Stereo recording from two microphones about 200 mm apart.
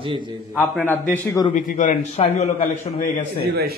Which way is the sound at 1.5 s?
40° left (ahead or behind).